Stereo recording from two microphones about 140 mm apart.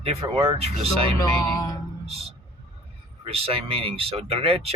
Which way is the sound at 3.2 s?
45° right (ahead or behind).